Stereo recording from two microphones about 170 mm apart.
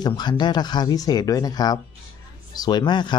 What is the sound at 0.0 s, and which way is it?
Speech, 25° left (ahead or behind).